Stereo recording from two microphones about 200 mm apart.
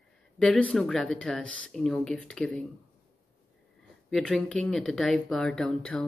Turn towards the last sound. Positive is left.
turn(degrees=5)  # may be behind; listen again after turning